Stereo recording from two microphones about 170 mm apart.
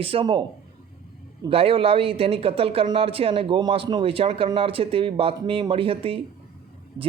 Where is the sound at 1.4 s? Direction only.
35° right (ahead or behind).